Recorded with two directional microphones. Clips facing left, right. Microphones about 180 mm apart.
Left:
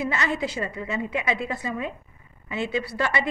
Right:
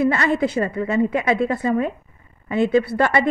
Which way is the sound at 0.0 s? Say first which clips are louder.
Right 8 dB; 55° right (ahead or behind).